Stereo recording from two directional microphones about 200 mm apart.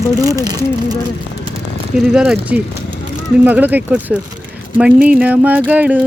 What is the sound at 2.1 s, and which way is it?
Speech, 5° right (ahead or behind).